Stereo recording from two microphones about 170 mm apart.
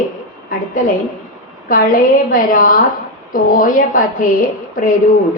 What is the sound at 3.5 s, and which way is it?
A woman's voice, 55° left (ahead or behind).